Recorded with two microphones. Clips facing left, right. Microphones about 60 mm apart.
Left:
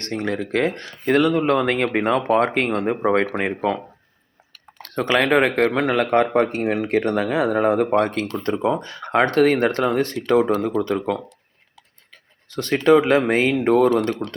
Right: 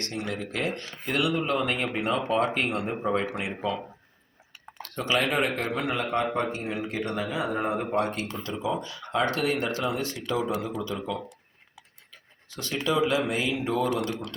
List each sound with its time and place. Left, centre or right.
0.0 s speech: left
4.8 s speech: left
12.5 s speech: left